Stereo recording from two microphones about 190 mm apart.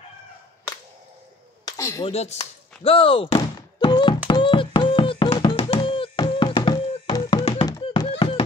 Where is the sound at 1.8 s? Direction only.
15° left (ahead or behind).